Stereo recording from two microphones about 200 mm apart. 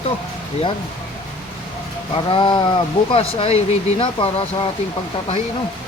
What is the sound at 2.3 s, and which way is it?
Speech, 25° left (ahead or behind).